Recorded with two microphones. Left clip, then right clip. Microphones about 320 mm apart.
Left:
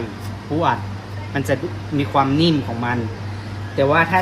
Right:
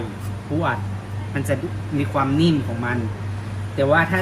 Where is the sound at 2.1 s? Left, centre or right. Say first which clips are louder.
Left 3 dB; centre.